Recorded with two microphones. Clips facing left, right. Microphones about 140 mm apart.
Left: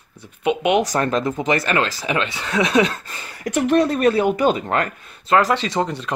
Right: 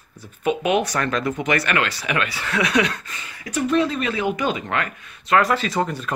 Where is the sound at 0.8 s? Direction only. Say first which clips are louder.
Left 3 dB; 40° left (ahead or behind).